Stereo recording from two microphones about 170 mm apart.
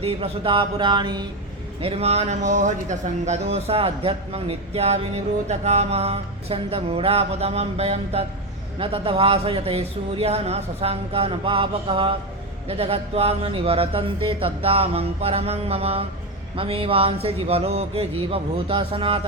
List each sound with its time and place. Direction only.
0.0 s speech: 35° right (ahead or behind)
1.8 s speech: 35° right (ahead or behind)